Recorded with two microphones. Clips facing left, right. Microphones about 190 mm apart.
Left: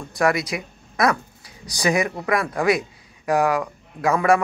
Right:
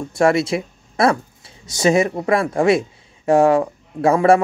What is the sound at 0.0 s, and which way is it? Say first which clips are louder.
Speech: right 5 dB; 25° right (ahead or behind).